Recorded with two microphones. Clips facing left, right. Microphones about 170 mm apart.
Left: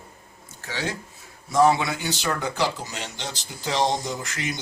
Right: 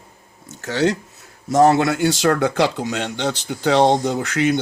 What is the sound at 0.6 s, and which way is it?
Speech, 75° right (ahead or behind).